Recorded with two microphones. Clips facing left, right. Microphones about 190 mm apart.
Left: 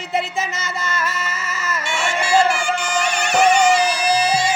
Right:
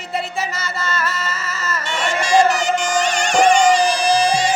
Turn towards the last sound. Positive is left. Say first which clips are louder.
# right 2 dB
turn(degrees=10)  # may be behind; listen again after turning